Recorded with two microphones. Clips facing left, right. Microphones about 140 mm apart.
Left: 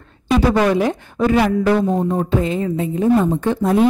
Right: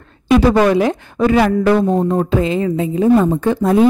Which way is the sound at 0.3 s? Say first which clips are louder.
Right 4 dB; 75° right (ahead or behind).